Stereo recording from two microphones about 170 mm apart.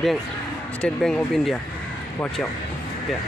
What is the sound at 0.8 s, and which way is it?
Speech, 5° left (ahead or behind).